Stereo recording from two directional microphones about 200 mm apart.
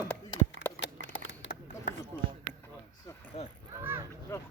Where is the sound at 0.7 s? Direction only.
65° left (ahead or behind).